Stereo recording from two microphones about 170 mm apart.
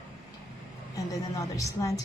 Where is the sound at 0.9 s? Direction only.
20° left (ahead or behind).